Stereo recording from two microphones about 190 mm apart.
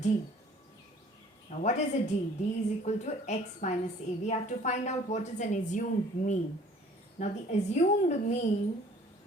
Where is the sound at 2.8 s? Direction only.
40° left (ahead or behind).